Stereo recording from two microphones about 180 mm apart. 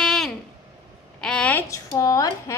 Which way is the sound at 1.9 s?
20° left (ahead or behind).